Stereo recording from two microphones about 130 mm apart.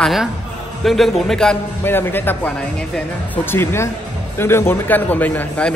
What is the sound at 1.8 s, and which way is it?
A man's voice, 15° left (ahead or behind).